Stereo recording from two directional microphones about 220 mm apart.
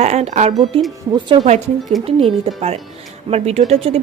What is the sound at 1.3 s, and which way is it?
Speech, 20° right (ahead or behind).